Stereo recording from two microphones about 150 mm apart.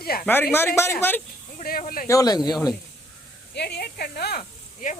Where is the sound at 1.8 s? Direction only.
70° left (ahead or behind).